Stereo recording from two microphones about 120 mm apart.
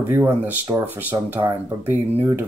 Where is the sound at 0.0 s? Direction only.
15° right (ahead or behind).